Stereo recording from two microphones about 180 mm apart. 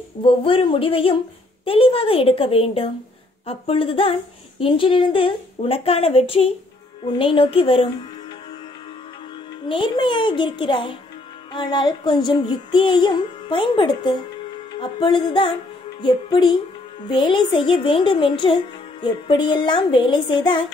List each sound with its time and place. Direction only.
0.2 s a woman's voice: 30° left (ahead or behind)
9.7 s a child's voice: 25° left (ahead or behind)